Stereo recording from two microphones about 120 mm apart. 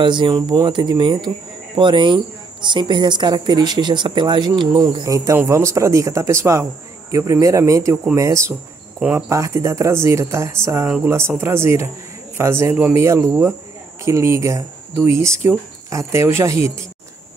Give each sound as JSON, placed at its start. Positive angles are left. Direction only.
{"t": 0.0, "sound": "speech", "side_deg": -40}
{"t": 5.0, "sound": "speech", "side_deg": -25}